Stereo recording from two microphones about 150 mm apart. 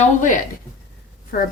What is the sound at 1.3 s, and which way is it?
Speech, 80° left.